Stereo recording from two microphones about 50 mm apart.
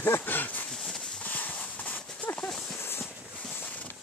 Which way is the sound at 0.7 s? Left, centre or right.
Centre.